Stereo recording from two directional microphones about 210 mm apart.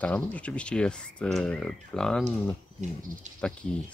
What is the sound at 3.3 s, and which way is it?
Speech, 35° right (ahead or behind).